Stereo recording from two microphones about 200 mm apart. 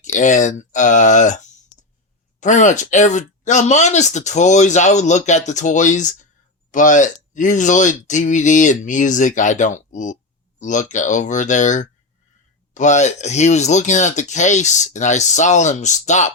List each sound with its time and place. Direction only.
0.0 s speech: 40° left (ahead or behind)